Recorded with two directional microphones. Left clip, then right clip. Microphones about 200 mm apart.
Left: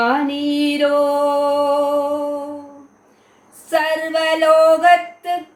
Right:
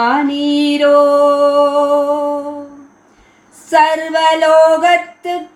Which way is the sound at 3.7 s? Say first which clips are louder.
Right 6 dB; 15° left (ahead or behind).